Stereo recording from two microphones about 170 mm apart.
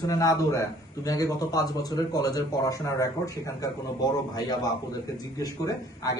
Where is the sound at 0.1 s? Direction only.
20° left (ahead or behind).